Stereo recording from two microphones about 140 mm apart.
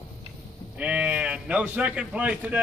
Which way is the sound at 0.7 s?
10° right (ahead or behind).